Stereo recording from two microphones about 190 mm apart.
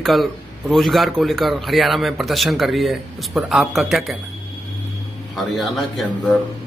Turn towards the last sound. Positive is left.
turn(degrees=0)  # may be behind; listen again after turning